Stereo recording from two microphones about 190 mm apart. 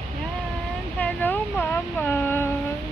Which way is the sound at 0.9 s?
10° left (ahead or behind).